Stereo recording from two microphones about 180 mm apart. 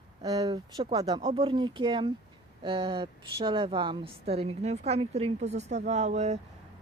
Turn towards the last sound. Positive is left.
turn(degrees=-40)  # may be behind; listen again after turning